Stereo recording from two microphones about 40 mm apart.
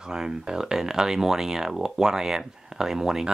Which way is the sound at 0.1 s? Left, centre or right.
Centre.